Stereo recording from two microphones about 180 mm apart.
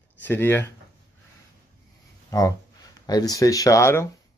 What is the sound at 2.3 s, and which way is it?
A man's voice, 20° left (ahead or behind).